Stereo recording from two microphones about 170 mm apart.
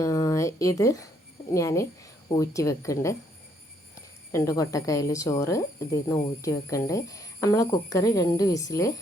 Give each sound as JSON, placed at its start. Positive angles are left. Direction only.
{"t": 0.0, "sound": "a sound", "side_deg": 20}
{"t": 1.5, "sound": "speech", "side_deg": 20}
{"t": 4.3, "sound": "speech", "side_deg": 20}